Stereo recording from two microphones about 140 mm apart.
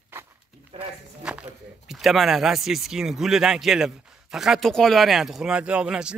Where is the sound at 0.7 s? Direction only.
45° right (ahead or behind).